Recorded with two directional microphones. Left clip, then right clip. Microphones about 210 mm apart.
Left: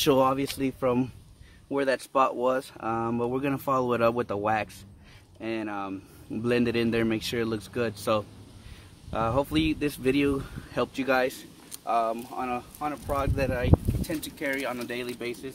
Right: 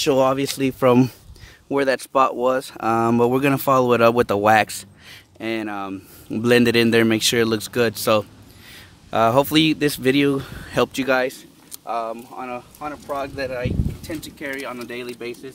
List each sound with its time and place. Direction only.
0.2 s speech: 25° right (ahead or behind)
0.6 s speech: 40° right (ahead or behind)
11.2 s a sound: 25° right (ahead or behind)
11.8 s speech: 5° left (ahead or behind)
12.8 s speech: 30° left (ahead or behind)